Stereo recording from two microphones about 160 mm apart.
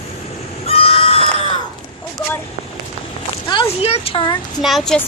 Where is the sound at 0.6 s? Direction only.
40° left (ahead or behind).